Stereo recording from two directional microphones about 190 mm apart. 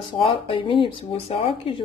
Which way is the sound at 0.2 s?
25° left (ahead or behind).